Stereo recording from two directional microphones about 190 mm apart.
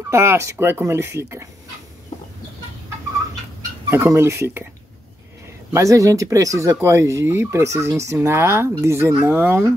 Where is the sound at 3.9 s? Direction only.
15° right (ahead or behind).